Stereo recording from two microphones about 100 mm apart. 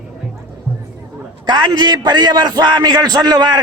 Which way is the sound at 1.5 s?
45° right (ahead or behind).